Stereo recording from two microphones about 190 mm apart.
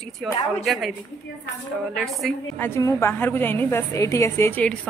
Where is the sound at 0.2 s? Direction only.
Centre (ahead or behind).